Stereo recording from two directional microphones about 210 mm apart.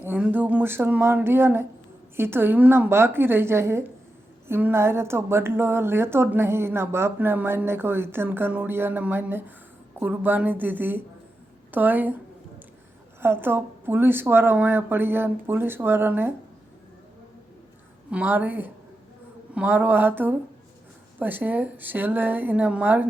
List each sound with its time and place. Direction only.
0.0 s speech: 10° right (ahead or behind)
13.2 s speech: 10° right (ahead or behind)
18.1 s speech: 10° right (ahead or behind)